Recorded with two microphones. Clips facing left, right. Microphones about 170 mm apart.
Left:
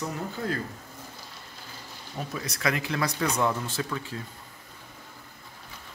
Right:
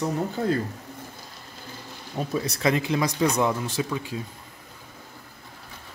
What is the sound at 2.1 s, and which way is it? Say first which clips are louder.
Speech: right 7 dB; 30° right (ahead or behind).